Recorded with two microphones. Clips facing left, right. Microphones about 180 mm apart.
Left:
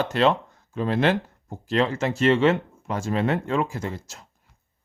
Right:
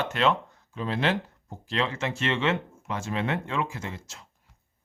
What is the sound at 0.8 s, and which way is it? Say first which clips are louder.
Speech: left 5 dB; 50° left (ahead or behind).